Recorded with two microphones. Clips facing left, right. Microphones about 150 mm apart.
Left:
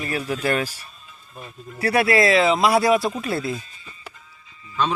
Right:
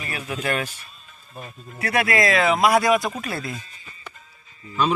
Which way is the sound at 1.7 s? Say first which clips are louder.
Left 3 dB; 30° left (ahead or behind).